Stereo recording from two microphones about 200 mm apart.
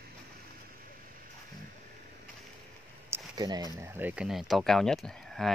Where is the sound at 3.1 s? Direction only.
20° right (ahead or behind).